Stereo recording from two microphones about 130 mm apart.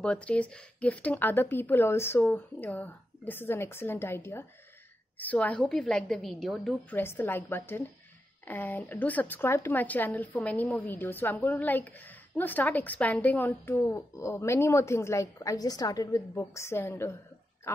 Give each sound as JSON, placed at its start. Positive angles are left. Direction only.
{"t": 0.0, "sound": "a woman's voice", "side_deg": 10}
{"t": 6.9, "sound": "speech", "side_deg": 15}